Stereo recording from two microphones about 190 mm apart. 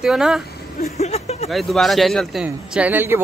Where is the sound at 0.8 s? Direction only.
35° left (ahead or behind).